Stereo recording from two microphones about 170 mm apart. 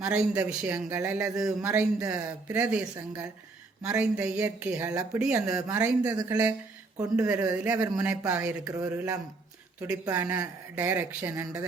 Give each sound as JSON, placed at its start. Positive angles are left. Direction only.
{"t": 0.0, "sound": "a man's voice", "side_deg": -5}
{"t": 2.0, "sound": "speech", "side_deg": -20}
{"t": 2.6, "sound": "a man's voice", "side_deg": -5}
{"t": 4.4, "sound": "a man's voice", "side_deg": -10}
{"t": 4.9, "sound": "speech", "side_deg": -20}
{"t": 5.2, "sound": "a man's voice", "side_deg": -5}
{"t": 6.1, "sound": "speech", "side_deg": -20}
{"t": 7.2, "sound": "a man's voice", "side_deg": -10}